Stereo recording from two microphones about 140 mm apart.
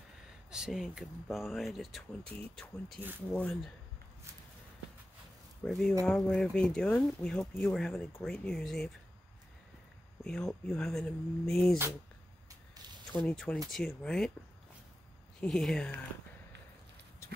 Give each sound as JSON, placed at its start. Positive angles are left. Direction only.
{"t": 0.5, "sound": "speech", "side_deg": -5}
{"t": 5.6, "sound": "speech", "side_deg": 5}
{"t": 10.2, "sound": "speech", "side_deg": 5}
{"t": 12.4, "sound": "a sound", "side_deg": -30}
{"t": 13.3, "sound": "speech", "side_deg": 5}
{"t": 15.4, "sound": "speech", "side_deg": 5}